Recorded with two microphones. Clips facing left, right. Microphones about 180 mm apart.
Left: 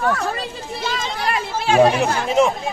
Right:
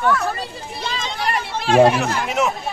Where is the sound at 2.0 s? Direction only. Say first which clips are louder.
Left 4 dB; 30° left (ahead or behind).